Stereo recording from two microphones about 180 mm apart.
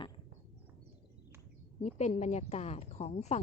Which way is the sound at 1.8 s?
40° left (ahead or behind).